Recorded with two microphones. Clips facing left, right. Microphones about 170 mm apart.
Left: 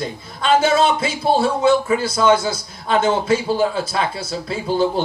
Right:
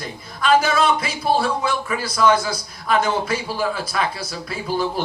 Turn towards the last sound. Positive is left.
turn(degrees=25)  # may be behind; listen again after turning